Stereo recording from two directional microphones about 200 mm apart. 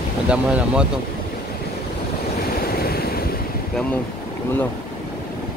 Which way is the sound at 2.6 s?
50° left (ahead or behind).